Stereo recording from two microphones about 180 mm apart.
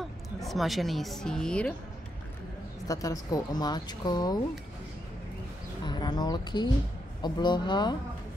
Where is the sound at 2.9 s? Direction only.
20° left (ahead or behind).